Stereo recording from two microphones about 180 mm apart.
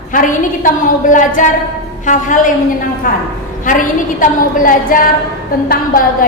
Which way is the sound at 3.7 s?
50° left (ahead or behind).